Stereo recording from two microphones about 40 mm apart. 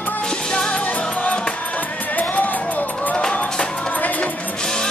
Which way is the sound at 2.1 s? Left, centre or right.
Left.